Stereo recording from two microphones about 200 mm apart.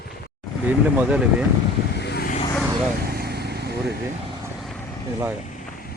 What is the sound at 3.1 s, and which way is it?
Vehicle, 50° right (ahead or behind).